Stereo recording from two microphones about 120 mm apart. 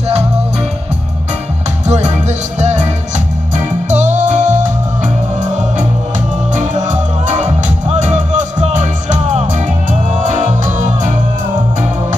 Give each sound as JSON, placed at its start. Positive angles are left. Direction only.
{"t": 1.9, "sound": "music", "side_deg": -75}
{"t": 3.9, "sound": "music", "side_deg": -90}
{"t": 6.5, "sound": "music", "side_deg": -90}